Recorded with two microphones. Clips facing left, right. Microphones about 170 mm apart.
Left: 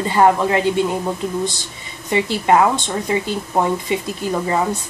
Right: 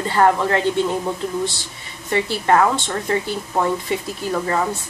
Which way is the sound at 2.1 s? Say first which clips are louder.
Left 2 dB; 15° left (ahead or behind).